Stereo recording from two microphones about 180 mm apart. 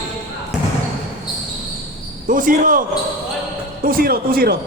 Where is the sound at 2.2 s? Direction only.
50° right (ahead or behind).